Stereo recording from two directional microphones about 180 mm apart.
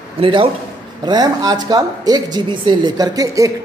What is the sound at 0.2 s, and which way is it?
Speech, 30° right (ahead or behind).